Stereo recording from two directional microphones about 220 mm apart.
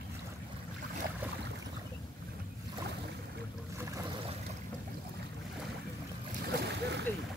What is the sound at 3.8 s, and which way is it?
Boat, 15° right (ahead or behind).